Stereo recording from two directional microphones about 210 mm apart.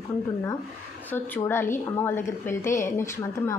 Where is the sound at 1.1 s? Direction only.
10° left (ahead or behind).